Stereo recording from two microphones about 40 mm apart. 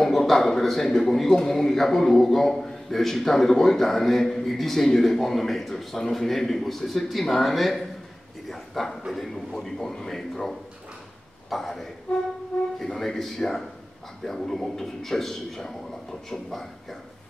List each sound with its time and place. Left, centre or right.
0.0 s a man's voice: centre